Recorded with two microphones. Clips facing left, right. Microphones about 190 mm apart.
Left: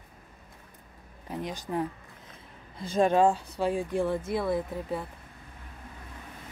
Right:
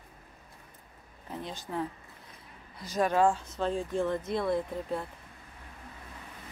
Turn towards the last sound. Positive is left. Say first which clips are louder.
# left 1 dB
turn(degrees=5)  # may be behind; listen again after turning